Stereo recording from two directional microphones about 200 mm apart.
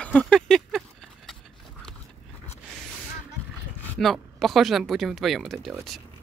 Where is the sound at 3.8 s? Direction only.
Centre (ahead or behind).